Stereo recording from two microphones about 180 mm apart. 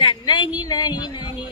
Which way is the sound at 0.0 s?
25° left (ahead or behind).